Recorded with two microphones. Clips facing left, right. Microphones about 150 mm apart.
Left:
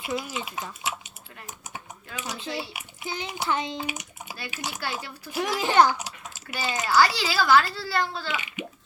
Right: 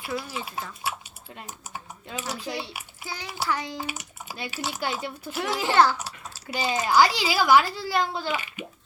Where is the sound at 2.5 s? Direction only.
25° right (ahead or behind).